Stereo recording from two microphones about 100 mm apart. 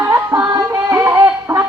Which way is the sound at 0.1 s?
30° right (ahead or behind).